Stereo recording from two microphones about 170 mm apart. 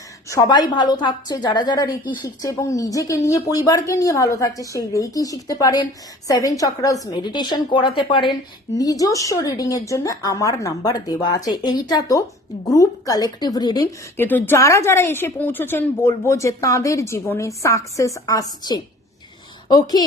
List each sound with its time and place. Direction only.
0.3 s speech: 20° left (ahead or behind)
14.2 s a woman's voice: 10° left (ahead or behind)